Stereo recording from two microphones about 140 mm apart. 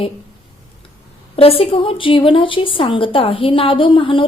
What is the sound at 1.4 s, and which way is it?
A woman's voice, 45° left (ahead or behind).